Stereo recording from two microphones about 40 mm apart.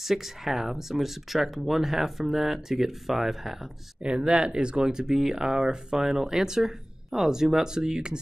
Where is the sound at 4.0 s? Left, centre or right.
Right.